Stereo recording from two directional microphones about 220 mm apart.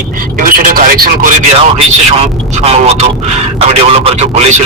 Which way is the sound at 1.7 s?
25° right (ahead or behind).